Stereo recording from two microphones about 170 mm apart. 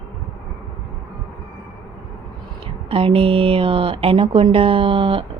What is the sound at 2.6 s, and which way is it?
Speech, 35° right (ahead or behind).